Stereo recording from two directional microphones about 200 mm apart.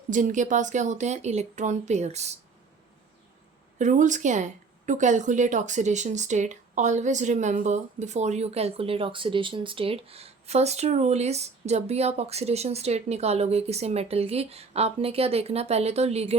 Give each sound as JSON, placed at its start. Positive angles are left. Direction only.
{"t": 0.1, "sound": "a woman's voice", "side_deg": -40}
{"t": 3.8, "sound": "a woman's voice", "side_deg": -40}